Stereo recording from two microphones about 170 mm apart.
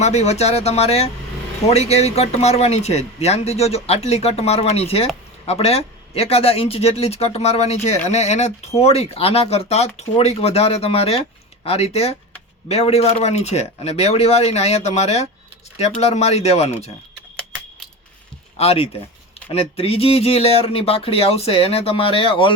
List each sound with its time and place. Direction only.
0.0 s speech: 40° left (ahead or behind)
18.5 s speech: 35° left (ahead or behind)